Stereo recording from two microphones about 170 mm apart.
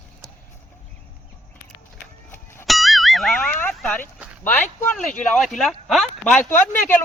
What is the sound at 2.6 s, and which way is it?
Music, centre (ahead or behind).